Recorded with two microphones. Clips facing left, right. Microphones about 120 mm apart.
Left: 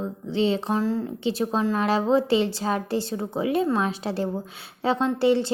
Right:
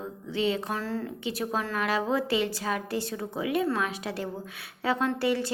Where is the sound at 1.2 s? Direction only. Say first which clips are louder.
Left 8 dB; 30° left (ahead or behind).